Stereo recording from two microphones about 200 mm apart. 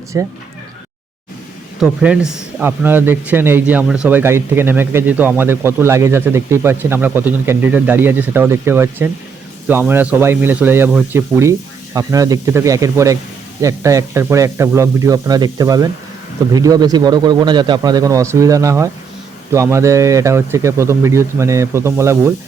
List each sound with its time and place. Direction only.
0.1 s a man's voice: 15° right (ahead or behind)
1.8 s a man's voice: 5° right (ahead or behind)